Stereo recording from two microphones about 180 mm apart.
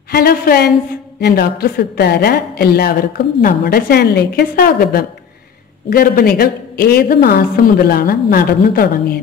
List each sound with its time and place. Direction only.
0.1 s a woman's voice: 55° left (ahead or behind)